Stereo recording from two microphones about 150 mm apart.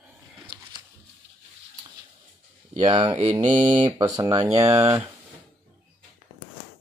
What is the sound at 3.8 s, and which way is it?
Speech, 25° right (ahead or behind).